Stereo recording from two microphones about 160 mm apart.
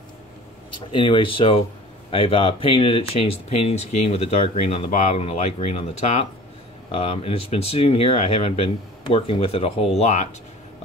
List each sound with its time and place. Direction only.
0.7 s speech: 30° left (ahead or behind)